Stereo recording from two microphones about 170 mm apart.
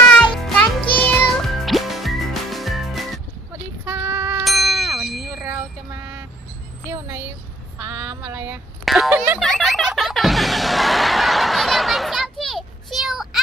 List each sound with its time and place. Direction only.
0.1 s music: centre (ahead or behind)
3.8 s sheep: 15° right (ahead or behind)
4.4 s a sound: centre (ahead or behind)
5.4 s vehicle: 15° right (ahead or behind)
7.8 s female singing: 15° right (ahead or behind)
8.8 s a sound: centre (ahead or behind)
9.4 s music: 5° left (ahead or behind)